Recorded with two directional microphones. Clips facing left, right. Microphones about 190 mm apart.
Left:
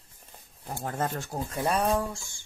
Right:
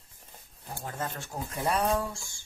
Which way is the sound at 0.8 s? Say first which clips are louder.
Left 5 dB; 50° left (ahead or behind).